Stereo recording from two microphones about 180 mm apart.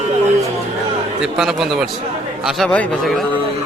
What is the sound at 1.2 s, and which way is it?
Speech, centre (ahead or behind).